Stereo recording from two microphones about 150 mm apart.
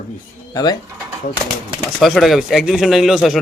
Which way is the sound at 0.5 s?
25° left (ahead or behind).